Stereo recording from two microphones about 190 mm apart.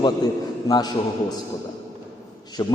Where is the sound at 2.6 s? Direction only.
20° left (ahead or behind).